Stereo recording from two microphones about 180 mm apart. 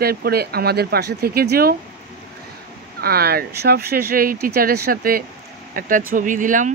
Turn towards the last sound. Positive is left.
turn(degrees=-45)  # may be behind; listen again after turning